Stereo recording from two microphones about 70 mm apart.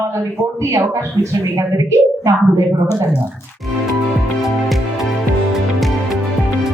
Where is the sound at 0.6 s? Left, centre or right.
Right.